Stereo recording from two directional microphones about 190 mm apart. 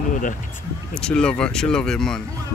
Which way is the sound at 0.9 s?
5° left (ahead or behind).